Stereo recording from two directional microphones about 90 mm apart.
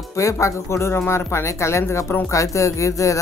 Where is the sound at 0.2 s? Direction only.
35° left (ahead or behind).